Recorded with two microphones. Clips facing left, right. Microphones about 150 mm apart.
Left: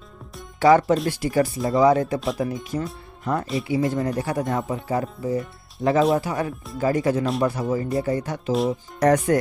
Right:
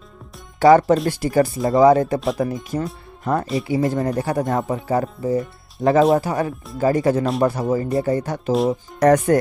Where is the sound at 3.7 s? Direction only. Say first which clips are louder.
Right 2 dB; 40° right (ahead or behind).